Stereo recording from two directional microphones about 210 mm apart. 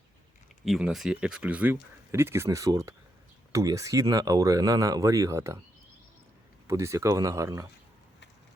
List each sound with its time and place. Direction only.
0.6 s speech: centre (ahead or behind)
6.7 s speech: 15° right (ahead or behind)